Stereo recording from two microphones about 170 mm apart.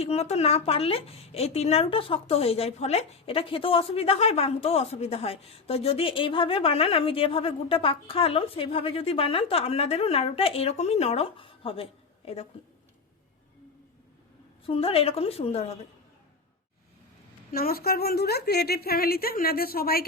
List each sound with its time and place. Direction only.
0.0 s a woman's voice: 40° left (ahead or behind)
14.7 s a woman's voice: 35° left (ahead or behind)
17.5 s a woman's voice: 60° left (ahead or behind)